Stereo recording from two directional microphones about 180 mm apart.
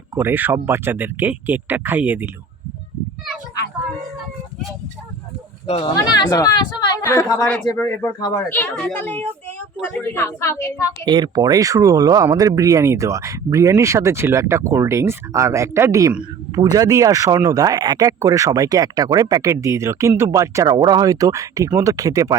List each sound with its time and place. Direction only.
0.1 s speech: 10° right (ahead or behind)
5.6 s speech: 30° left (ahead or behind)
11.0 s speech: 25° right (ahead or behind)